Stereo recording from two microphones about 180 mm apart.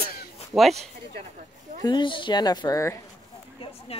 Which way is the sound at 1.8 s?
25° left (ahead or behind).